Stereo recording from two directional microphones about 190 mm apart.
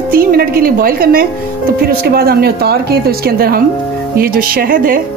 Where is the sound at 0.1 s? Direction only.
50° right (ahead or behind).